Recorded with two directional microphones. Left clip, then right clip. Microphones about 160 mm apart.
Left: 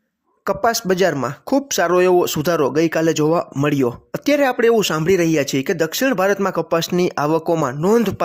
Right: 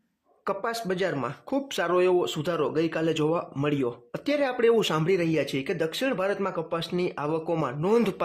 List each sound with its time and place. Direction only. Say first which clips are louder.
0.4 s speech: left 11 dB; 45° left (ahead or behind)
7.5 s speech: left 4 dB; 35° left (ahead or behind)